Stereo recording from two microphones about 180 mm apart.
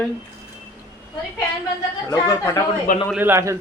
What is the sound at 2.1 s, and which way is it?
Speech, 20° left (ahead or behind).